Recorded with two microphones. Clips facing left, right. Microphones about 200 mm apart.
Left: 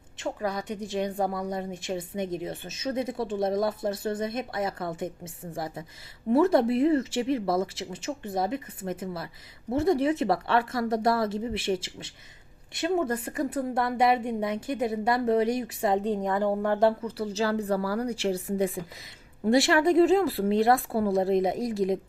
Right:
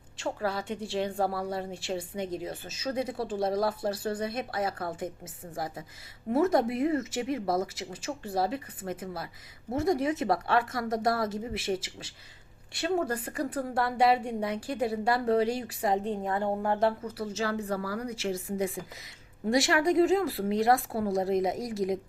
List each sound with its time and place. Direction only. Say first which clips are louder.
0.2 s a woman's voice: left 1 dB; 20° left (ahead or behind)